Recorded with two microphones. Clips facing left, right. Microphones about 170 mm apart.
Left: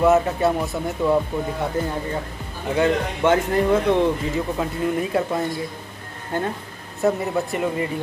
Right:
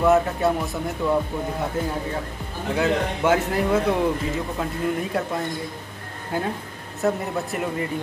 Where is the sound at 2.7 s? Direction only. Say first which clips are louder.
Left 2 dB; 5° right (ahead or behind).